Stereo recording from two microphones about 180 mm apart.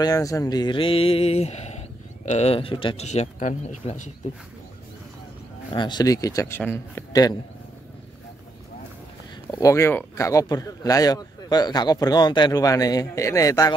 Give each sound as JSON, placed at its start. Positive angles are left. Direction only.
{"t": 0.0, "sound": "speech", "side_deg": 20}
{"t": 5.7, "sound": "speech", "side_deg": 25}
{"t": 9.5, "sound": "speech", "side_deg": 20}